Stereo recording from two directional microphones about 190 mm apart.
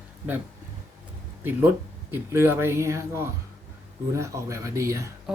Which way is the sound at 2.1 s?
10° right (ahead or behind).